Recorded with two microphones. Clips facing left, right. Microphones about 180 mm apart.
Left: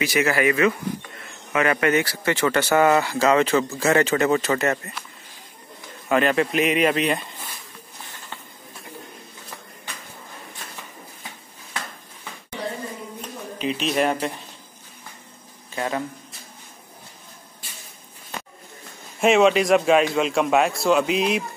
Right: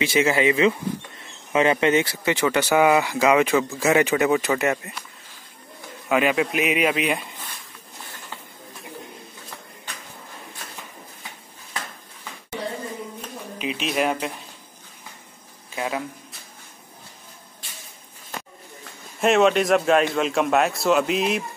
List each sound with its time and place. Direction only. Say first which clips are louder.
0.0 s speech: right 1 dB; 25° right (ahead or behind)
6.0 s speech: left 1 dB; 5° right (ahead or behind)
13.6 s a man's voice: left 2 dB; 5° right (ahead or behind)
15.7 s a man's voice: left 1 dB; 5° right (ahead or behind)
19.1 s a man's voice: left 1 dB; centre (ahead or behind)